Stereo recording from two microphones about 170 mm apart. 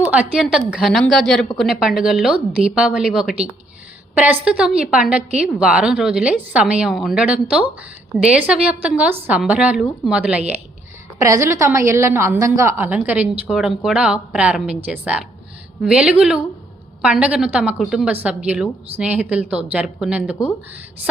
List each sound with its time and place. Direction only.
0.0 s a woman's voice: 10° right (ahead or behind)
11.2 s a woman's voice: 15° right (ahead or behind)